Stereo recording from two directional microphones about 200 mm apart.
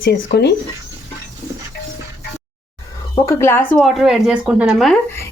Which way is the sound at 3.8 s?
Centre (ahead or behind).